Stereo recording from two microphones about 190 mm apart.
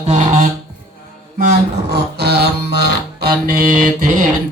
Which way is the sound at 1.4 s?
50° right (ahead or behind).